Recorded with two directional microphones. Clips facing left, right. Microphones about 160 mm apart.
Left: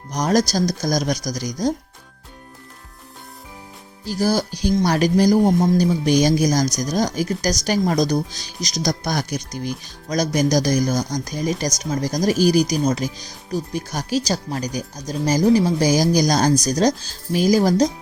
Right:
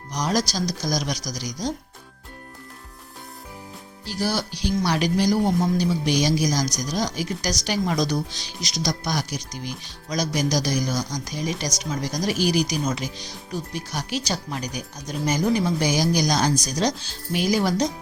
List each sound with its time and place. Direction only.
0.1 s speech: 50° left (ahead or behind)
4.0 s speech: 45° left (ahead or behind)